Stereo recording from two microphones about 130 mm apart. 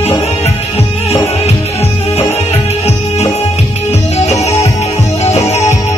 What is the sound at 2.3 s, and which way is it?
Music, 55° left (ahead or behind).